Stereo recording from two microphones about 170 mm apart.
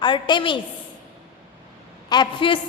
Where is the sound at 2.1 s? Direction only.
30° left (ahead or behind).